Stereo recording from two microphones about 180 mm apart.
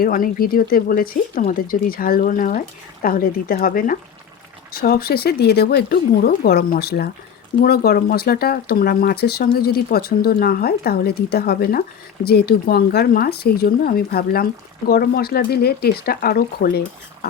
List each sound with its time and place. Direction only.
0.0 s speech: 50° left (ahead or behind)